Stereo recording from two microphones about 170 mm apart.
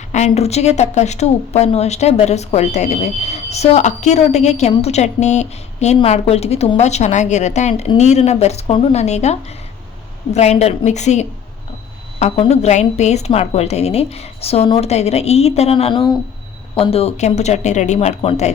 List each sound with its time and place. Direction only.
0.1 s a woman's voice: 40° left (ahead or behind)